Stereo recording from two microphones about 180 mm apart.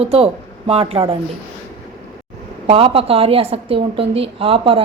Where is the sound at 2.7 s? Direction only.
30° right (ahead or behind).